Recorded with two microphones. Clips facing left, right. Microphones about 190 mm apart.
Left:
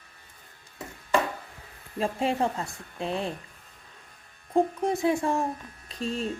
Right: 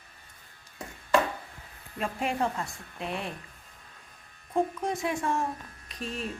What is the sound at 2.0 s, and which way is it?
Speech, 25° left (ahead or behind).